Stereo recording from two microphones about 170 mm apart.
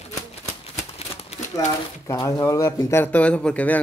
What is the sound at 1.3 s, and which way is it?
Typewriter, 40° left (ahead or behind).